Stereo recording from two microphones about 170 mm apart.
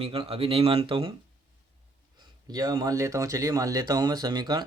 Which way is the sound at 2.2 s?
25° right (ahead or behind).